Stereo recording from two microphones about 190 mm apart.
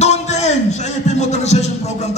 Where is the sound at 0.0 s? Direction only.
35° left (ahead or behind).